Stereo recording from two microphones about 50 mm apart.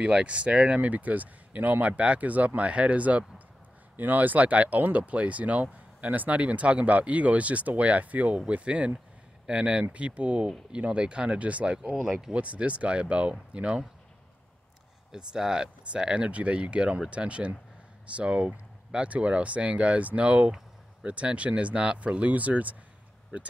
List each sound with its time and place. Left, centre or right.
0.0 s speech: right
12.1 s speech: centre
12.4 s speech: right
15.0 s speech: centre